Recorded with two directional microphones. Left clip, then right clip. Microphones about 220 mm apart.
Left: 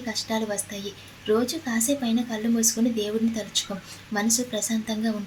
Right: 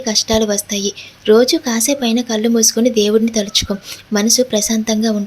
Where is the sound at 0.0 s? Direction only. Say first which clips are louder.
Right 13 dB; 40° right (ahead or behind).